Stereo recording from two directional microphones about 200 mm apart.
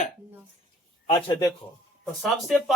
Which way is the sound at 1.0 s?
20° left (ahead or behind).